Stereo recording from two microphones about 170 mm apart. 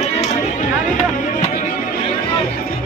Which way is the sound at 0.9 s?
45° left (ahead or behind).